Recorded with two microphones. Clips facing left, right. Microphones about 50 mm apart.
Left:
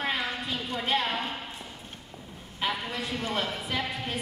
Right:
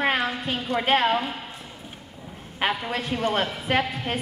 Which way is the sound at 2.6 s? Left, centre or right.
Right.